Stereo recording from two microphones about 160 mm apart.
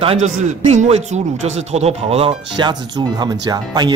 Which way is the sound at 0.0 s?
40° right (ahead or behind).